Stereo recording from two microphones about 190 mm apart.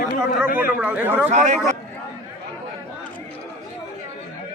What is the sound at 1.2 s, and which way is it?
Speech, 35° right (ahead or behind).